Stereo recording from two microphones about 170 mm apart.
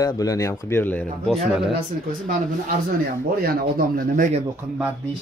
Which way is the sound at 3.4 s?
60° right (ahead or behind).